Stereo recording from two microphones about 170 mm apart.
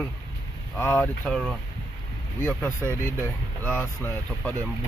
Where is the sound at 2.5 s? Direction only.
10° left (ahead or behind).